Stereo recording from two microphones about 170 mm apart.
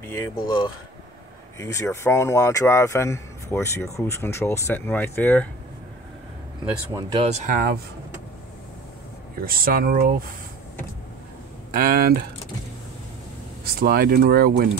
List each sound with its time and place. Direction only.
0.0 s speech: 15° left (ahead or behind)
7.0 s speech: 25° right (ahead or behind)
7.2 s speech: 40° right (ahead or behind)
7.5 s speech: 65° right (ahead or behind)
9.4 s speech: 60° right (ahead or behind)
11.7 s speech: 60° right (ahead or behind)
13.7 s speech: 60° right (ahead or behind)